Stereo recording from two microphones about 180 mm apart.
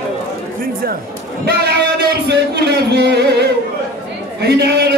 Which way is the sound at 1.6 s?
65° right (ahead or behind).